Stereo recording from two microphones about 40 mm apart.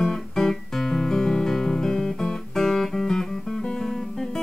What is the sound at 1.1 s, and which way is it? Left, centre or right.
Music, centre.